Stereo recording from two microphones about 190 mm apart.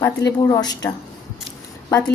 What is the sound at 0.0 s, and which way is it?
Speech, 15° left (ahead or behind).